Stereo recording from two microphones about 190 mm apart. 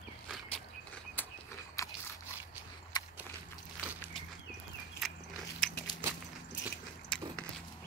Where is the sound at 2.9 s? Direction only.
20° left (ahead or behind).